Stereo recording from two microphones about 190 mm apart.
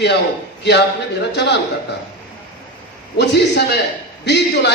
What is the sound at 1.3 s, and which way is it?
Speech, 65° left (ahead or behind).